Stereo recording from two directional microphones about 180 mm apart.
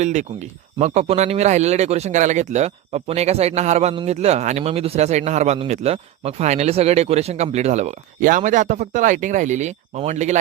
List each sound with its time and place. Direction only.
0.0 s speech: 40° right (ahead or behind)